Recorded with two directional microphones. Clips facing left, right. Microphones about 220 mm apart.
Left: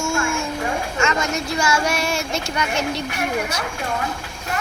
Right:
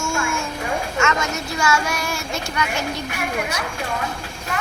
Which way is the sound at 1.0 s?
30° left (ahead or behind).